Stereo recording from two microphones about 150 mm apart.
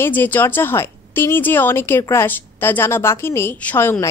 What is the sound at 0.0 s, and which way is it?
A woman's voice, 15° left (ahead or behind).